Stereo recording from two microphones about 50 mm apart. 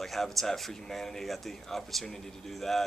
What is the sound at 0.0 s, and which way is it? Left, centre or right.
Speech, centre.